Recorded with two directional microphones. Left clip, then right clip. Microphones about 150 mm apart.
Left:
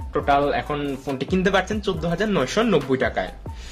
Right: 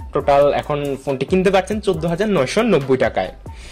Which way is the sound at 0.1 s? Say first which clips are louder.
Right 6 dB; 45° right (ahead or behind).